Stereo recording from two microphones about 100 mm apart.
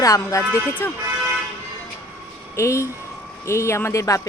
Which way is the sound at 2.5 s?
30° left (ahead or behind).